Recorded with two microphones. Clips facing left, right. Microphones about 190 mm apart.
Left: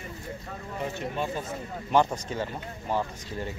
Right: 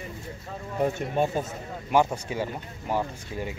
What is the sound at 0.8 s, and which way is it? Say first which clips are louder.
Speech: right 7 dB; 50° right (ahead or behind).